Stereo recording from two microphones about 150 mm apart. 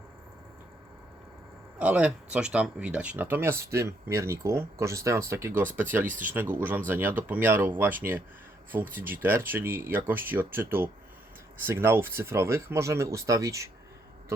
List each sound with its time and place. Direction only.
1.8 s speech: 10° right (ahead or behind)
6.1 s speech: 60° right (ahead or behind)
6.3 s speech: 10° right (ahead or behind)